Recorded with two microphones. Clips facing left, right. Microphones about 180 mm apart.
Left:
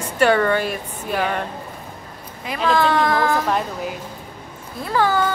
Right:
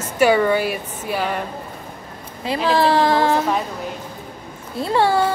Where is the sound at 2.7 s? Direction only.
30° right (ahead or behind).